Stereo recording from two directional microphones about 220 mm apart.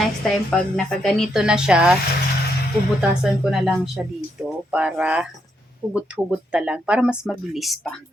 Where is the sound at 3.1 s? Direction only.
Centre (ahead or behind).